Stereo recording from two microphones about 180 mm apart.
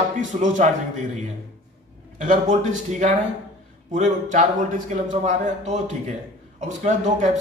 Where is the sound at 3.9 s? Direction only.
40° right (ahead or behind).